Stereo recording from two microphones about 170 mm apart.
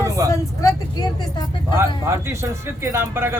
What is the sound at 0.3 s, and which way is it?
Vehicle, 20° left (ahead or behind).